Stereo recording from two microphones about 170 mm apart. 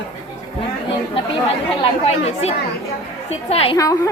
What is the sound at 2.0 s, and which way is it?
Speech, 40° left (ahead or behind).